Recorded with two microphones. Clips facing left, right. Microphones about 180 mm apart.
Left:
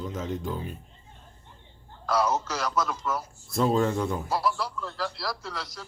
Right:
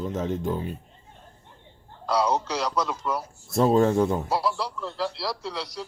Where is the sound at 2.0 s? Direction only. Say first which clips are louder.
Right 2 dB; 30° right (ahead or behind).